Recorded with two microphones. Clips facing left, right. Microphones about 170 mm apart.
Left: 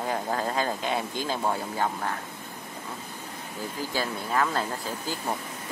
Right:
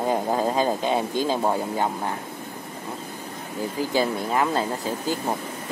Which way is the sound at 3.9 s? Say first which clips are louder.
Right 5 dB; 20° right (ahead or behind).